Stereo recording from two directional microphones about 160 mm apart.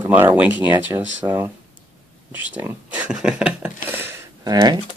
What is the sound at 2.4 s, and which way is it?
Speech, 10° right (ahead or behind).